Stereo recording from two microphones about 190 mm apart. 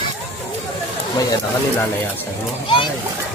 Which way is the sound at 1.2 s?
20° left (ahead or behind).